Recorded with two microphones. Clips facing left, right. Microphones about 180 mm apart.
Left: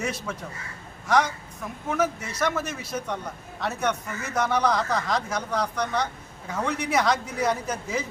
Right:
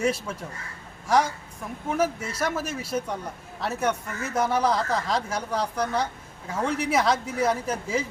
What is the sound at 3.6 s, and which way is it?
Speech, 5° right (ahead or behind).